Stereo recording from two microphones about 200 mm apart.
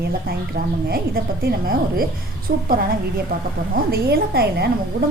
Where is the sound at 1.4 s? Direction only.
50° right (ahead or behind).